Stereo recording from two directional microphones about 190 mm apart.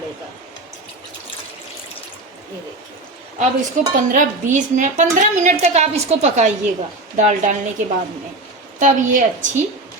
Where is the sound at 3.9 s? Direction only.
45° right (ahead or behind).